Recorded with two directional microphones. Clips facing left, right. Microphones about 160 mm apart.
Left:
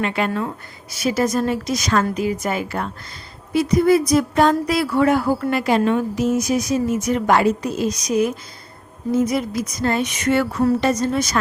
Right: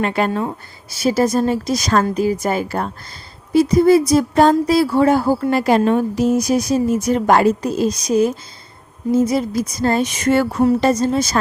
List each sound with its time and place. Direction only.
0.0 s speech: 40° right (ahead or behind)